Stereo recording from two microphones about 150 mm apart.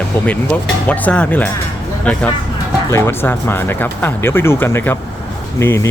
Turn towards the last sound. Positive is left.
turn(degrees=15)  # may be behind; listen again after turning